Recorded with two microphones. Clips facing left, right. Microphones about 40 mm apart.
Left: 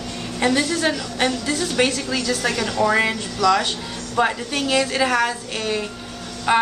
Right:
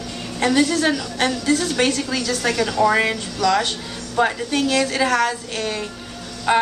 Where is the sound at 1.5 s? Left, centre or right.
Centre.